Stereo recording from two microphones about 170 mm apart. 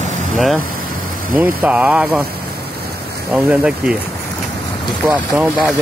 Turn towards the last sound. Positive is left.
turn(degrees=-10)  # may be behind; listen again after turning